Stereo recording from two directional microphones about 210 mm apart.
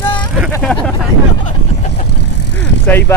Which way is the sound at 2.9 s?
10° left (ahead or behind).